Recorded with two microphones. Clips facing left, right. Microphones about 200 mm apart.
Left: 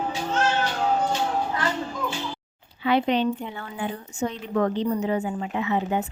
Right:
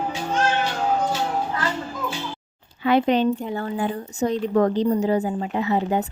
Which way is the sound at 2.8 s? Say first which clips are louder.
Right 3 dB; 45° right (ahead or behind).